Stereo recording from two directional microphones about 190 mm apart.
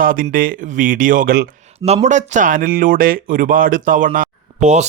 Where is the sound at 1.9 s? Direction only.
35° right (ahead or behind).